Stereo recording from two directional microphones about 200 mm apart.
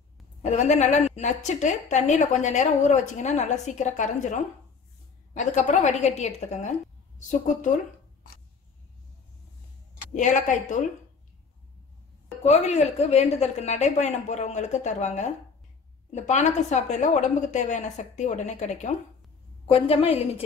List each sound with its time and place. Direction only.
0.4 s a woman's voice: 35° left (ahead or behind)
10.1 s a woman's voice: 40° left (ahead or behind)
12.4 s a woman's voice: 35° left (ahead or behind)